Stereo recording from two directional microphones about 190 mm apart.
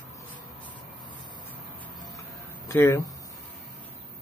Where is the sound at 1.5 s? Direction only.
10° left (ahead or behind).